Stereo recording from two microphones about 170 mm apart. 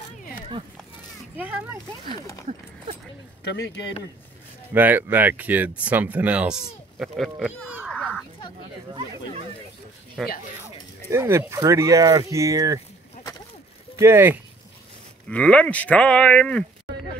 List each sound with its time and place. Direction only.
1.3 s speech: 10° right (ahead or behind)
2.0 s speech: 20° left (ahead or behind)
3.5 s speech: 80° left
4.7 s speech: 10° right (ahead or behind)
7.9 s a sound: 5° left (ahead or behind)
10.2 s speech: centre (ahead or behind)
11.1 s speech: 15° right (ahead or behind)
13.9 s speech: 15° right (ahead or behind)
15.2 s speech: 5° left (ahead or behind)